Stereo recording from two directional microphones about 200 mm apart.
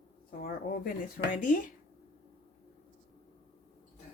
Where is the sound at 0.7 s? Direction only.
45° left (ahead or behind).